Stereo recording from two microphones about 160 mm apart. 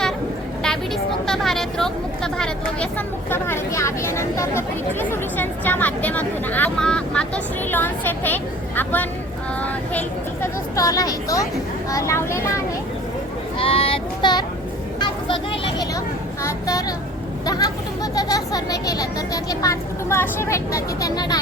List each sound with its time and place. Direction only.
1.3 s a sound: centre (ahead or behind)
3.2 s speech: 15° left (ahead or behind)
10.4 s speech: 20° left (ahead or behind)
13.6 s child singing: 35° left (ahead or behind)
14.9 s vehicle: 30° left (ahead or behind)
16.4 s speech: 20° left (ahead or behind)